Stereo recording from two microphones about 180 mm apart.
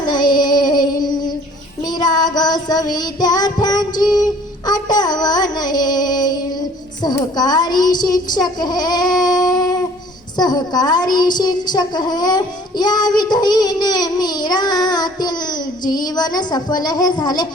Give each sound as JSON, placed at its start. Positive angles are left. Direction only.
{"t": 0.0, "sound": "child singing", "side_deg": 25}
{"t": 7.0, "sound": "a woman's voice", "side_deg": 20}